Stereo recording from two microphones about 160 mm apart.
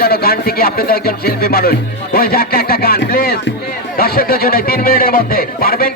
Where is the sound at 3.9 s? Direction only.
70° left (ahead or behind).